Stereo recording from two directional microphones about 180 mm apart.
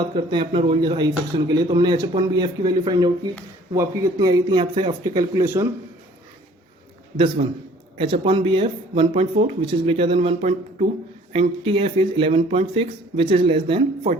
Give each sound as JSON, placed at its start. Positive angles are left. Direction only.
{"t": 0.1, "sound": "speech", "side_deg": -25}
{"t": 7.9, "sound": "speech", "side_deg": -30}